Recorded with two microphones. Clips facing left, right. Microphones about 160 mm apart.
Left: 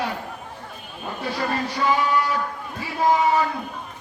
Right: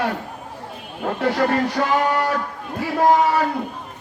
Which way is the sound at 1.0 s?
80° right.